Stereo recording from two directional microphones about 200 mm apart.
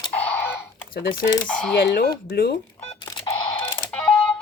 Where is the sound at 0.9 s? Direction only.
45° left (ahead or behind).